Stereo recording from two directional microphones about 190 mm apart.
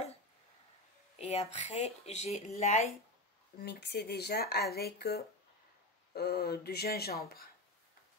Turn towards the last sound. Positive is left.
turn(degrees=55)  # may be behind; listen again after turning